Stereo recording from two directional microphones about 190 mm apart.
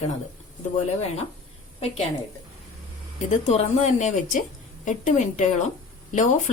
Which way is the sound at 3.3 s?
35° left (ahead or behind).